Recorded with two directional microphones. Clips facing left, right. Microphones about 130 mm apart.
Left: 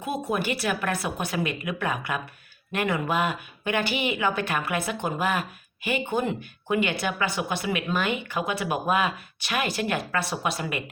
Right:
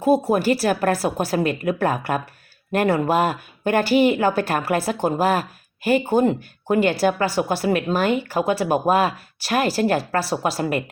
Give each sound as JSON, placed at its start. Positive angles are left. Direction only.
{"t": 0.0, "sound": "speech", "side_deg": -35}